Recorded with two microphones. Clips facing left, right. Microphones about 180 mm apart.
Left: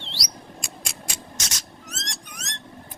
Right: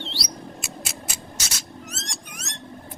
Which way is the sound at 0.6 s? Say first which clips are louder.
Right 2 dB; 5° right (ahead or behind).